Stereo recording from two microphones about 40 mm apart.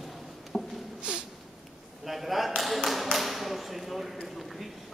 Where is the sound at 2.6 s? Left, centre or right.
Centre.